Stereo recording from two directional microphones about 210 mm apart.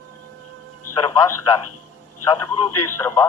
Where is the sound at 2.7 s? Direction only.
90° left.